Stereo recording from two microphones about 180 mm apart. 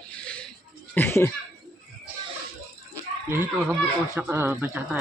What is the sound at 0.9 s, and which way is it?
Speech, 10° left (ahead or behind).